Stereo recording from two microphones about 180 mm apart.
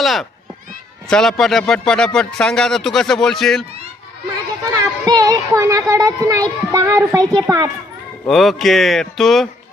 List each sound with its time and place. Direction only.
0.0 s speech: centre (ahead or behind)
4.6 s speech: 20° right (ahead or behind)
8.3 s speech: centre (ahead or behind)